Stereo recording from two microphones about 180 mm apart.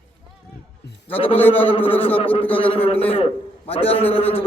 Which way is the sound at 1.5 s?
30° left (ahead or behind).